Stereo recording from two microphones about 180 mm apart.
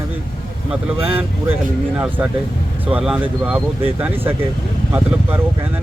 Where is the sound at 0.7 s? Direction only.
10° right (ahead or behind).